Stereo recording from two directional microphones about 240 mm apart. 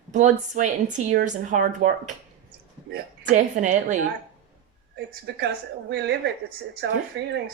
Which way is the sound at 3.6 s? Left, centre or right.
Right.